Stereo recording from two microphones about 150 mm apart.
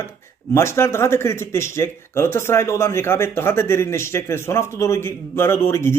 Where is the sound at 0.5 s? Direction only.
20° left (ahead or behind).